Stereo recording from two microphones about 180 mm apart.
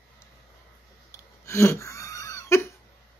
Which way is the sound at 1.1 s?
15° left (ahead or behind).